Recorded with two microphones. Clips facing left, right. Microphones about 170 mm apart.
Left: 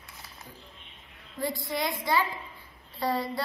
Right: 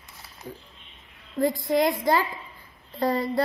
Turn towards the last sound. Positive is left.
turn(degrees=-50)  # may be behind; listen again after turning